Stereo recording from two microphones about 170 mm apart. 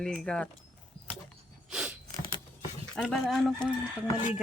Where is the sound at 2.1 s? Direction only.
25° left (ahead or behind).